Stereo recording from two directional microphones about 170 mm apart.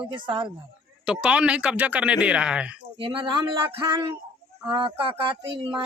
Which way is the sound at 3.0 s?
30° right (ahead or behind).